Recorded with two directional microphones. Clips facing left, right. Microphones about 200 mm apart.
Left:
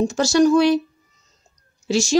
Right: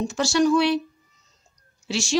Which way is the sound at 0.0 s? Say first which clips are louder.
Left 5 dB; 40° left (ahead or behind).